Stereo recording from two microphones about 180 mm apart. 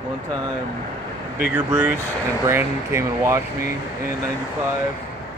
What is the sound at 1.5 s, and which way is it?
Speech, 5° right (ahead or behind).